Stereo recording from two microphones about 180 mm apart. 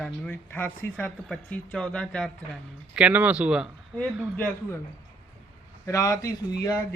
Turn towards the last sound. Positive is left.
turn(degrees=20)  # may be behind; listen again after turning